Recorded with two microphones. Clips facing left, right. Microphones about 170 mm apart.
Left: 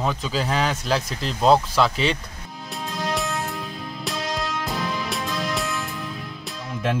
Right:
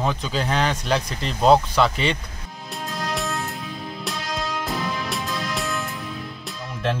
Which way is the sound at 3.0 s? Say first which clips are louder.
Left 2 dB; centre (ahead or behind).